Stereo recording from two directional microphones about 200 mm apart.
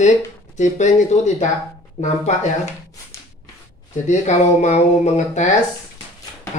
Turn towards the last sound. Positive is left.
turn(degrees=35)  # may be behind; listen again after turning